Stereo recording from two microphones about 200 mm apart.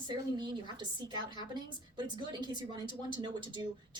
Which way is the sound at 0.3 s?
20° right (ahead or behind).